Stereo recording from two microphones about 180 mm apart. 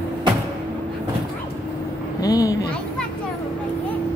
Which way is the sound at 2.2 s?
20° left (ahead or behind).